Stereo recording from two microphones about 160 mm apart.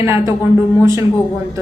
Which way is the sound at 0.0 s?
15° right (ahead or behind).